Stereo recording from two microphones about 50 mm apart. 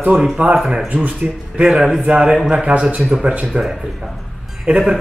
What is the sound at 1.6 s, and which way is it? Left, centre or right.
A man's voice, centre.